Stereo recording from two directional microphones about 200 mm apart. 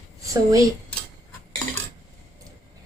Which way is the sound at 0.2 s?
15° right (ahead or behind).